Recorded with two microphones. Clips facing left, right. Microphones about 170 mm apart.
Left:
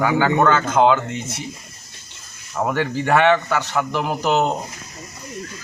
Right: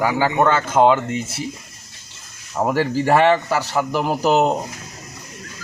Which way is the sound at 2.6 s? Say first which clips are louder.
Right 2 dB; 15° right (ahead or behind).